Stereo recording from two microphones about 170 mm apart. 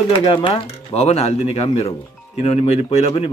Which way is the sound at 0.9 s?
35° left (ahead or behind).